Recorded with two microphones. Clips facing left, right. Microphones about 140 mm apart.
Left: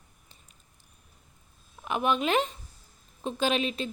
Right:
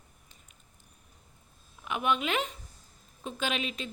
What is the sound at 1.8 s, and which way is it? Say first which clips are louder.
A woman's voice: left 3 dB; 35° left (ahead or behind).